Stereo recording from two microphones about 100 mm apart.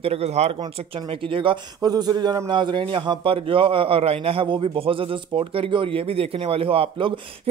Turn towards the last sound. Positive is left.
turn(degrees=-60)  # may be behind; listen again after turning